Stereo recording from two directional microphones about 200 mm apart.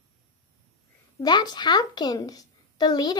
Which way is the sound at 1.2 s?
20° left (ahead or behind).